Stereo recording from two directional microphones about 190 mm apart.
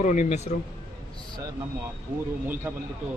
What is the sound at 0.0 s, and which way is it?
Speech, 40° left (ahead or behind).